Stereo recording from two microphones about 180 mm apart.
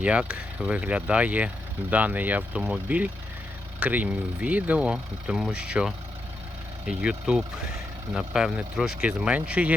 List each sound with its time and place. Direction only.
0.0 s speech: 5° right (ahead or behind)